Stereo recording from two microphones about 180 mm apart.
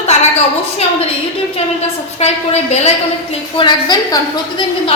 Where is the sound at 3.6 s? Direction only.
25° left (ahead or behind).